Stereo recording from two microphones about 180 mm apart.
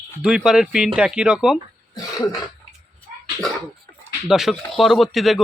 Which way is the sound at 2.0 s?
20° left (ahead or behind).